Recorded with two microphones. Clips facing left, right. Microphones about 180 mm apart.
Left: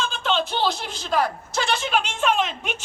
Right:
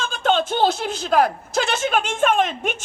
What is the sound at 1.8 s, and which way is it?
A man's voice, 50° right (ahead or behind).